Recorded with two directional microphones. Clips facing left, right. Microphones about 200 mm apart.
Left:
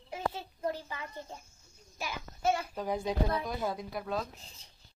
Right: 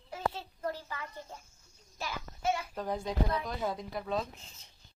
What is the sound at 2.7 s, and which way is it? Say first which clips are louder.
Speech: left 1 dB; 10° left (ahead or behind).